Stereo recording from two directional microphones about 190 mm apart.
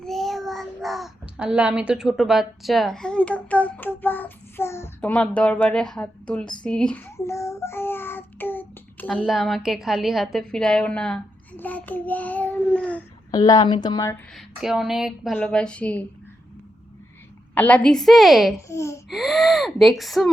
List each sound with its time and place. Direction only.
0.0 s a child's voice: centre (ahead or behind)
9.2 s a child's voice: centre (ahead or behind)
13.3 s speech: 20° left (ahead or behind)
14.3 s a child's voice: centre (ahead or behind)
17.5 s speech: 10° left (ahead or behind)
18.7 s a child's voice: 15° left (ahead or behind)
19.1 s speech: centre (ahead or behind)